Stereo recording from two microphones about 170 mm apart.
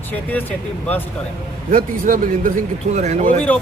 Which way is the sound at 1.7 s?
55° right (ahead or behind).